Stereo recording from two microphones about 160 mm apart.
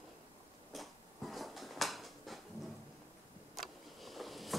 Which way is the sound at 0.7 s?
Centre (ahead or behind).